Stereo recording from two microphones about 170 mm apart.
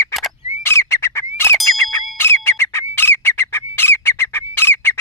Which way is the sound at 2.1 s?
15° left (ahead or behind).